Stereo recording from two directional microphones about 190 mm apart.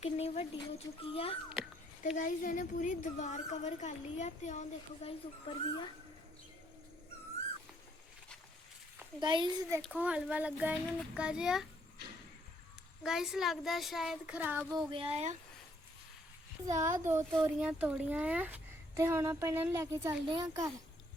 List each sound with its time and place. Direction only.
0.0 s a sound: 30° left (ahead or behind)
2.0 s a woman's voice: 45° left (ahead or behind)
5.0 s speech: 25° left (ahead or behind)
9.2 s a child's voice: 25° right (ahead or behind)
9.8 s speech: 5° right (ahead or behind)
13.0 s speech: centre (ahead or behind)
14.8 s speech: 30° right (ahead or behind)
16.6 s speech: 15° right (ahead or behind)